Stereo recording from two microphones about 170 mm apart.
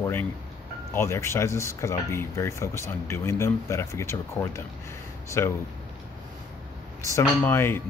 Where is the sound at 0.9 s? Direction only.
15° left (ahead or behind).